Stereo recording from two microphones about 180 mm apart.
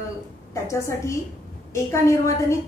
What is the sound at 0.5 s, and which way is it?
A woman's voice, 15° left (ahead or behind).